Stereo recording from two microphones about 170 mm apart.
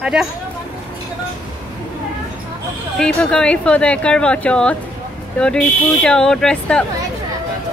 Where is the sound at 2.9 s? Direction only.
5° left (ahead or behind).